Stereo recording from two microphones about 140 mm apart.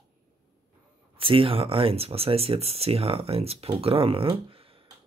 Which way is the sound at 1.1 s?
40° right (ahead or behind).